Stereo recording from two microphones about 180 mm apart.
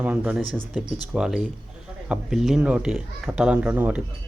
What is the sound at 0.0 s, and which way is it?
Speech, 5° right (ahead or behind).